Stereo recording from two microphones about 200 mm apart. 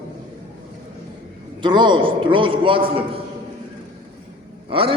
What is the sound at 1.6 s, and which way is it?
A man's voice, 25° right (ahead or behind).